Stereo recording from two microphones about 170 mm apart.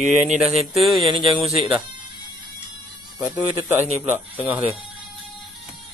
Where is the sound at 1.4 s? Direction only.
35° right (ahead or behind).